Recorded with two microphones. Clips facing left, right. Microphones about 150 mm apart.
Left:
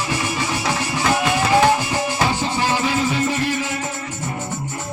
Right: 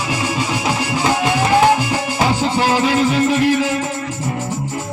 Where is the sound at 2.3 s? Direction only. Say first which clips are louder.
Right 5 dB; 90° right.